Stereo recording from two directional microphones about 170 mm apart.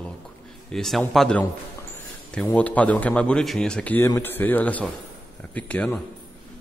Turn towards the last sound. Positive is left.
turn(degrees=10)  # may be behind; listen again after turning